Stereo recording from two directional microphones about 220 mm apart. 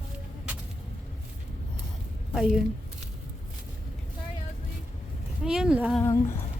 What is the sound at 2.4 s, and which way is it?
Speech, centre (ahead or behind).